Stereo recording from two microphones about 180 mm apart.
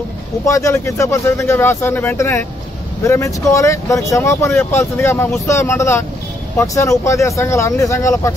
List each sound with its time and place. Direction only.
0.5 s speech: 15° left (ahead or behind)